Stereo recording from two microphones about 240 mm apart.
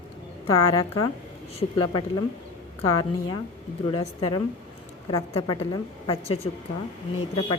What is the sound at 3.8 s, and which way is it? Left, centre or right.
A woman's voice, left.